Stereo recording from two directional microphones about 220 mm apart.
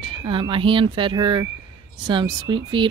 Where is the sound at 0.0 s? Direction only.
25° right (ahead or behind).